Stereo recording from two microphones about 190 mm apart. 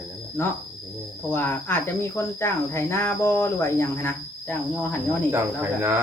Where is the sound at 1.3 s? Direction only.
10° left (ahead or behind).